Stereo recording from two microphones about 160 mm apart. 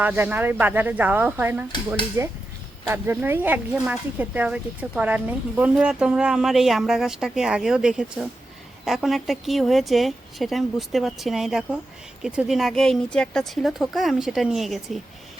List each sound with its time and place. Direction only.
0.0 s speech: 10° right (ahead or behind)